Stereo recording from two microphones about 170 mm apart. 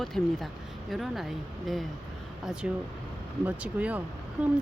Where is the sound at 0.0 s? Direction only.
Centre (ahead or behind).